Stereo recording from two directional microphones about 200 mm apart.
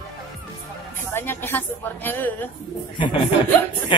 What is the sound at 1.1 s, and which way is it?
A woman's voice, 10° left (ahead or behind).